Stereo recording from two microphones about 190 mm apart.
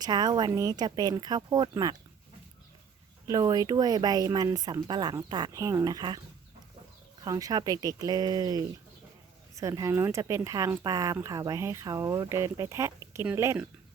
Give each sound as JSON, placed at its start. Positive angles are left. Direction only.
{"t": 0.0, "sound": "speech", "side_deg": -20}
{"t": 3.2, "sound": "speech", "side_deg": -20}
{"t": 7.3, "sound": "speech", "side_deg": -20}